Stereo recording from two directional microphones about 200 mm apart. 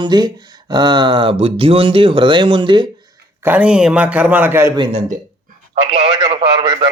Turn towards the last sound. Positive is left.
turn(degrees=-25)  # may be behind; listen again after turning